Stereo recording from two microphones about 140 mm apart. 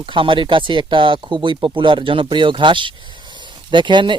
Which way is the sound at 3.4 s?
35° right (ahead or behind).